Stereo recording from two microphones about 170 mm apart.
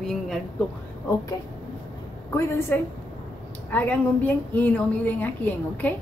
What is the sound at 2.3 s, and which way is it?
A woman's voice, 15° left (ahead or behind).